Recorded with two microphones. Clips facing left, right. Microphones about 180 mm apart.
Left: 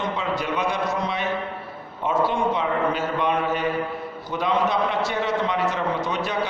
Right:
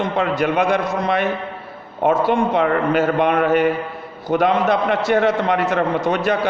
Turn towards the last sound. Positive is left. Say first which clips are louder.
# right 7 dB
turn(degrees=-60)  # may be behind; listen again after turning